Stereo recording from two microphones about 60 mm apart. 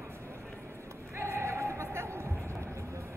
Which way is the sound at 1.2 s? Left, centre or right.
Right.